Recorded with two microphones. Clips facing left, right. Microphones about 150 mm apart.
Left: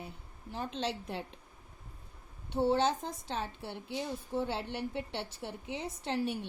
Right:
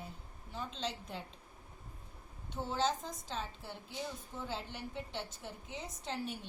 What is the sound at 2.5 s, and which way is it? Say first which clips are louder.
A woman's voice: left 7 dB; 65° left (ahead or behind).